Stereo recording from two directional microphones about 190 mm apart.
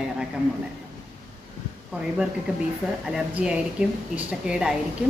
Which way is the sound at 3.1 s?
5° right (ahead or behind).